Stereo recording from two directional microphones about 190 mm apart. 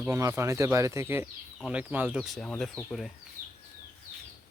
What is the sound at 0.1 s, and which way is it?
Speech, 15° right (ahead or behind).